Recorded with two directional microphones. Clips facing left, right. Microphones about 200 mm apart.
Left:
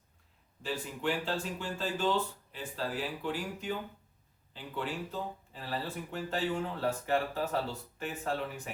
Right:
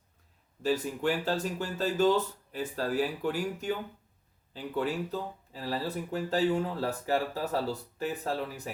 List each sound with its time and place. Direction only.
0.6 s speech: 40° right (ahead or behind)